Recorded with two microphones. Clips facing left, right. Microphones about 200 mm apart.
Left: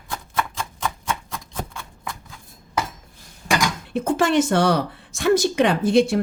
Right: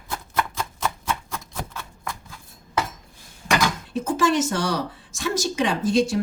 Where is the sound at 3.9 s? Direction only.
60° left (ahead or behind).